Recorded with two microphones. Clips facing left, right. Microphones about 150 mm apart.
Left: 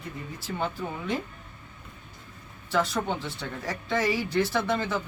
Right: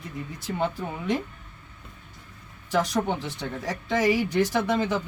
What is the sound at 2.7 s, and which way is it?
Speech, 15° right (ahead or behind).